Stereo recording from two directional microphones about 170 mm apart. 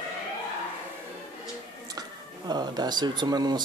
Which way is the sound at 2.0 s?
25° right (ahead or behind).